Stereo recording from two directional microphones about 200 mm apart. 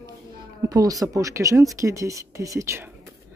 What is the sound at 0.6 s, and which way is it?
Speech, 15° right (ahead or behind).